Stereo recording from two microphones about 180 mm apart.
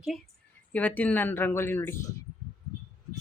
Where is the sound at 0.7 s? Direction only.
10° left (ahead or behind).